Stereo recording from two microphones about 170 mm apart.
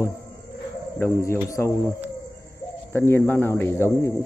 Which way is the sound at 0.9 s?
15° left (ahead or behind).